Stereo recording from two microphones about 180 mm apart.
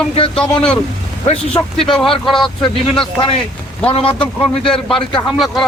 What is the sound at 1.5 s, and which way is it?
Speech, 5° left (ahead or behind).